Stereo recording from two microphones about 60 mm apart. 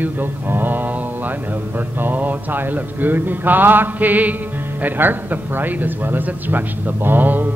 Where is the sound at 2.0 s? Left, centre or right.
Right.